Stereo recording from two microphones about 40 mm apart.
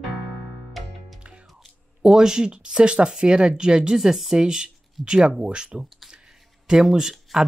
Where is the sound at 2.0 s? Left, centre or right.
Centre.